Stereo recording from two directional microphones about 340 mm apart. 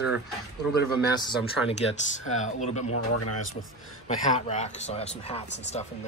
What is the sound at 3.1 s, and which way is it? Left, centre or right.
Speech, left.